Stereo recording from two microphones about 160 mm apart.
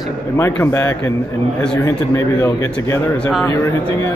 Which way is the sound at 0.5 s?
15° left (ahead or behind).